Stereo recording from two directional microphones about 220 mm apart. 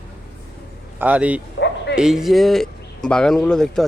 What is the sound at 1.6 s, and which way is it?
Bow-wow, 60° left (ahead or behind).